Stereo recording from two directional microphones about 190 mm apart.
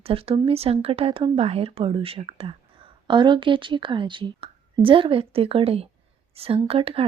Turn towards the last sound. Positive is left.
turn(degrees=-30)  # may be behind; listen again after turning